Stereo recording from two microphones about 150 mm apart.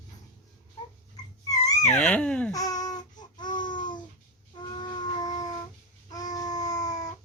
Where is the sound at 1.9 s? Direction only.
10° left (ahead or behind).